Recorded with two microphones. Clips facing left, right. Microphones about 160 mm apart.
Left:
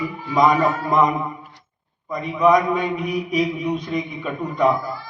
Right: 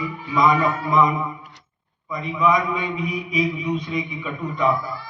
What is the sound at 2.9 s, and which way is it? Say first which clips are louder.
Speech: left 3 dB; 60° left (ahead or behind).